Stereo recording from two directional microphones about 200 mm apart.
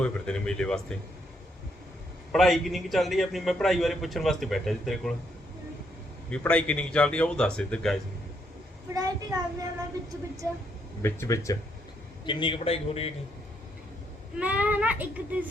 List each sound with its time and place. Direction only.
0.0 s a man's voice: 5° left (ahead or behind)
2.3 s a man's voice: centre (ahead or behind)
6.3 s a man's voice: 5° left (ahead or behind)
9.0 s a child's voice: 20° right (ahead or behind)
11.0 s a man's voice: 15° left (ahead or behind); by 13.1 s 30° left (ahead or behind)
14.3 s a child's voice: 5° right (ahead or behind)